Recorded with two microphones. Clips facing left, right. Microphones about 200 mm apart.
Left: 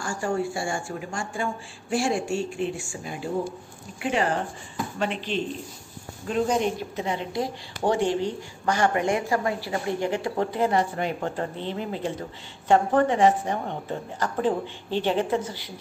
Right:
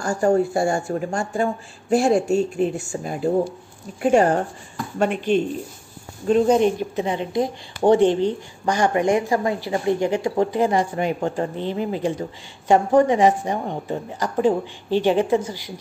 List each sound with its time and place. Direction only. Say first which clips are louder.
0.0 s speech: right 8 dB; 40° right (ahead or behind)
6.2 s a woman's voice: right 8 dB; 25° right (ahead or behind); by 15.7 s 10° right (ahead or behind)